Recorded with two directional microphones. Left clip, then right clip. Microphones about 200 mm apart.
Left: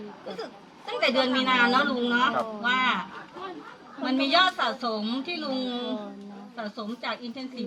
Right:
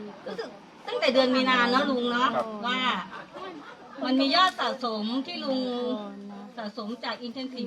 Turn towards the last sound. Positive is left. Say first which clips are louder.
# even
turn(degrees=-20)  # may be behind; listen again after turning